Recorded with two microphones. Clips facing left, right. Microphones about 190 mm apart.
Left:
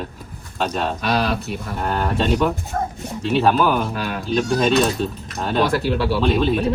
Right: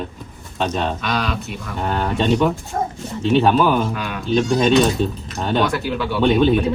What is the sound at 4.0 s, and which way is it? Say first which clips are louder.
Speech: left 1 dB; 35° left (ahead or behind).